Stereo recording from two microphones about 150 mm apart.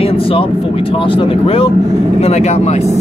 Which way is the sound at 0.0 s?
40° left (ahead or behind).